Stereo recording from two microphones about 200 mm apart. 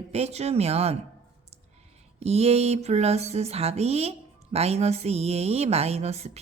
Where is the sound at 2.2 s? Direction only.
30° right (ahead or behind).